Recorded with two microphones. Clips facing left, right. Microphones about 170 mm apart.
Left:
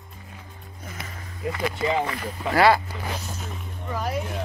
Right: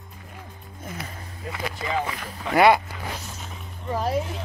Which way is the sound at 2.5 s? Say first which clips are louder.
Right 1 dB; 20° right (ahead or behind).